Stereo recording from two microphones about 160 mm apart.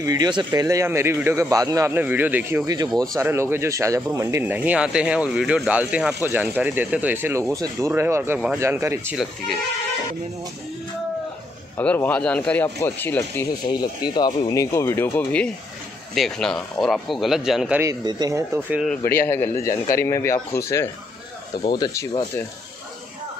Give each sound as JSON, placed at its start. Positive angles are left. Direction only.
{"t": 0.0, "sound": "a man's voice", "side_deg": -25}
{"t": 9.1, "sound": "speech", "side_deg": -5}
{"t": 11.7, "sound": "a man's voice", "side_deg": 10}
{"t": 13.7, "sound": "speech", "side_deg": 25}
{"t": 17.8, "sound": "a man's voice", "side_deg": -20}
{"t": 19.0, "sound": "a man's voice", "side_deg": 15}